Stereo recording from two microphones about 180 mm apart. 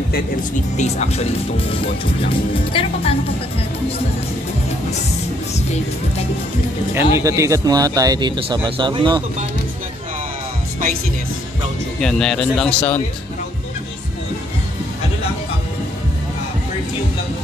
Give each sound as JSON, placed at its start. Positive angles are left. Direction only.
{"t": 0.7, "sound": "speech", "side_deg": 40}
{"t": 7.2, "sound": "speech", "side_deg": -15}
{"t": 12.0, "sound": "speech", "side_deg": 5}